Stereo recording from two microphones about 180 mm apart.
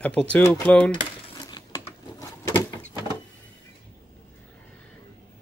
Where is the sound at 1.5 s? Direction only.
20° left (ahead or behind).